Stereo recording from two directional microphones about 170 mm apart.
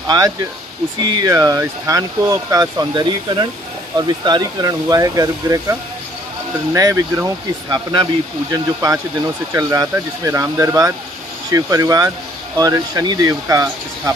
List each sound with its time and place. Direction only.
1.1 s speech: 20° right (ahead or behind)